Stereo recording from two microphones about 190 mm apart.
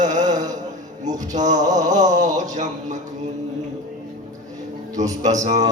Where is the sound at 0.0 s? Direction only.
40° right (ahead or behind).